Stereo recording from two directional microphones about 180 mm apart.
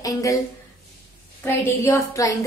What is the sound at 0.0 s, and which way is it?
Speech, 15° left (ahead or behind).